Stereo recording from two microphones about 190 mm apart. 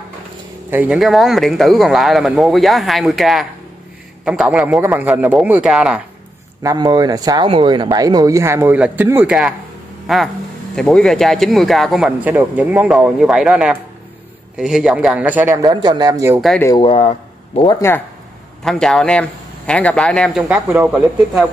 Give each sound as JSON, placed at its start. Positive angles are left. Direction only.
{"t": 0.7, "sound": "speech", "side_deg": -10}
{"t": 6.6, "sound": "speech", "side_deg": -20}
{"t": 10.0, "sound": "a sound", "side_deg": 0}
{"t": 10.8, "sound": "speech", "side_deg": 5}
{"t": 16.3, "sound": "speech", "side_deg": 0}
{"t": 16.6, "sound": "speech", "side_deg": 25}
{"t": 17.7, "sound": "speech", "side_deg": 15}
{"t": 18.6, "sound": "speech", "side_deg": 5}